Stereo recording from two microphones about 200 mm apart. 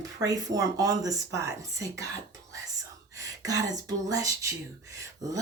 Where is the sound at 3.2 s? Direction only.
15° right (ahead or behind).